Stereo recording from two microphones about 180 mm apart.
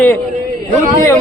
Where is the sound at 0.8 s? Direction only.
50° right (ahead or behind).